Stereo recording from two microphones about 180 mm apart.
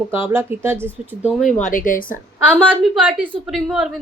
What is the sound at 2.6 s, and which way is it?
A woman's voice, centre (ahead or behind).